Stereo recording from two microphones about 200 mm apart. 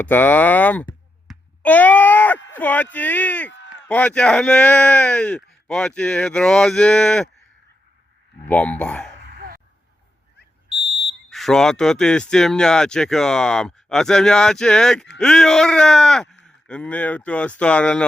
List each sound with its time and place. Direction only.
0.0 s speech: 10° left (ahead or behind)
3.5 s a sound: 65° left (ahead or behind)
3.8 s speech: 5° left (ahead or behind)
8.4 s speech: 5° left (ahead or behind)
9.3 s a sound: 45° right (ahead or behind)
11.3 s speech: centre (ahead or behind)